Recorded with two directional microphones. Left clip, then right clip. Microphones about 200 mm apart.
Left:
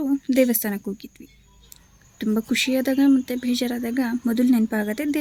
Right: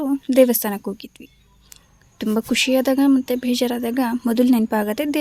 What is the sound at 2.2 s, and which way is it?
Speech, 25° right (ahead or behind).